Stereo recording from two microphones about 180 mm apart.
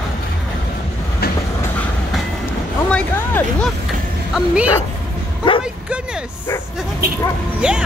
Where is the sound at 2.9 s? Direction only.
10° left (ahead or behind).